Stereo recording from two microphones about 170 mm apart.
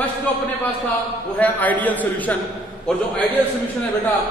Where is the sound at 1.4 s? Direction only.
10° left (ahead or behind).